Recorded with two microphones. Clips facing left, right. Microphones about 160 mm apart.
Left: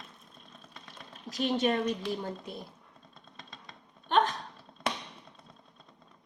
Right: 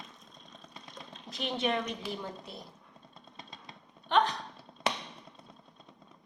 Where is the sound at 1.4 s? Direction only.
40° left (ahead or behind).